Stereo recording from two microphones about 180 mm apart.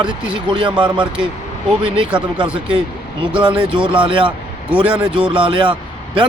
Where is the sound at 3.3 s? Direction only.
25° right (ahead or behind).